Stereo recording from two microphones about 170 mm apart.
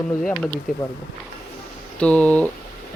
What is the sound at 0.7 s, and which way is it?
Speech, 55° left (ahead or behind).